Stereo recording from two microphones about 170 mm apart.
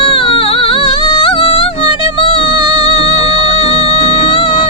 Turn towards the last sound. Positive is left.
turn(degrees=30)  # may be behind; listen again after turning